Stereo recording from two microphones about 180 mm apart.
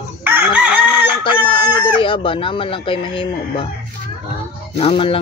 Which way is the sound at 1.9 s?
30° left (ahead or behind).